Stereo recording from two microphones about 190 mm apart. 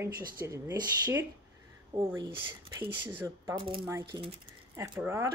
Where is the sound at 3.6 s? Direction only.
25° right (ahead or behind).